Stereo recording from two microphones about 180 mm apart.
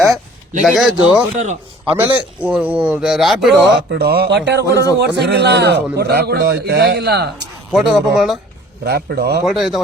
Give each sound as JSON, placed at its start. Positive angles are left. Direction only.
{"t": 0.6, "sound": "speech", "side_deg": 0}
{"t": 1.4, "sound": "a man's voice", "side_deg": -40}
{"t": 2.0, "sound": "speech", "side_deg": -10}
{"t": 3.7, "sound": "a man's voice", "side_deg": -70}
{"t": 7.7, "sound": "speech", "side_deg": -5}
{"t": 8.8, "sound": "a man's voice", "side_deg": -65}
{"t": 9.5, "sound": "speech", "side_deg": 0}